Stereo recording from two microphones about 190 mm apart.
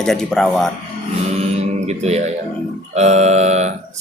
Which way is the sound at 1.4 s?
35° right (ahead or behind).